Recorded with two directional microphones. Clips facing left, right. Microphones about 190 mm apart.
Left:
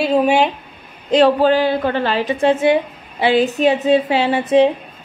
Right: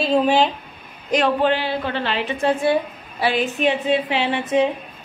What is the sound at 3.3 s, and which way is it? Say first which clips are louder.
A woman's voice: left 7 dB; 40° left (ahead or behind).